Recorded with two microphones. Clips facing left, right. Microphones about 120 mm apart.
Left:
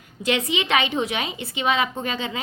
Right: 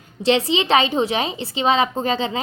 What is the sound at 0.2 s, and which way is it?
A woman's voice, 30° right (ahead or behind).